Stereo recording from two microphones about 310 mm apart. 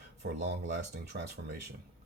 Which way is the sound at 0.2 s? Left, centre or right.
Right.